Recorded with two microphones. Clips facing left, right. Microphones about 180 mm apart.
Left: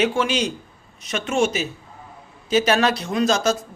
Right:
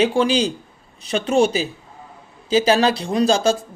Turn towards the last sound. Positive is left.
turn(degrees=-30)  # may be behind; listen again after turning